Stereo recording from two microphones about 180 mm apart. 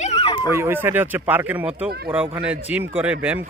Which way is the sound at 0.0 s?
35° left (ahead or behind).